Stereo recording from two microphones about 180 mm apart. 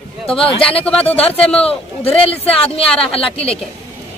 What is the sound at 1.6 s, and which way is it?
A man's voice, 35° left (ahead or behind).